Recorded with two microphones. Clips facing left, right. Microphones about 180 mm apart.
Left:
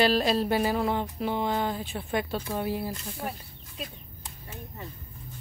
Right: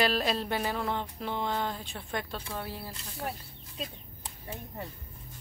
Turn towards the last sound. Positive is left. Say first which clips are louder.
# right 2 dB
turn(degrees=-30)  # may be behind; listen again after turning